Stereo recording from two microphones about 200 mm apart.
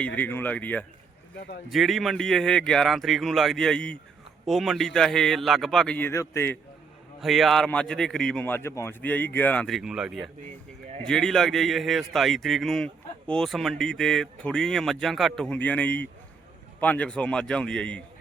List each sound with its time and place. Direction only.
0.0 s speech: 10° left (ahead or behind)
1.4 s speech: 50° left (ahead or behind)
1.7 s a man's voice: centre (ahead or behind)
7.2 s a man's voice: centre (ahead or behind)